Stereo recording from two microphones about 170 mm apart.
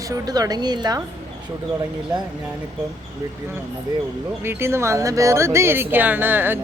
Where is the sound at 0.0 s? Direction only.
20° right (ahead or behind).